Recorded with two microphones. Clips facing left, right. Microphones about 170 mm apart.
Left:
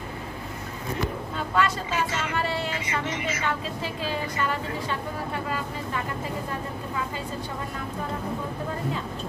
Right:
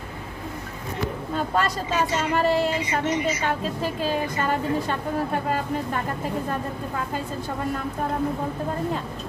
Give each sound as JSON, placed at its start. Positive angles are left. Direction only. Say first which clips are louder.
{"t": 1.3, "sound": "speech", "louder": "right 2 dB", "side_deg": -40}